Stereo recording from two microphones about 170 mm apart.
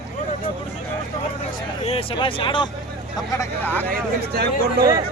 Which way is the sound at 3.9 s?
65° right (ahead or behind).